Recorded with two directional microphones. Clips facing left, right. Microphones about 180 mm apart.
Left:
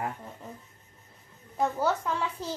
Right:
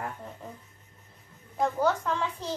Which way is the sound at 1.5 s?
10° left (ahead or behind).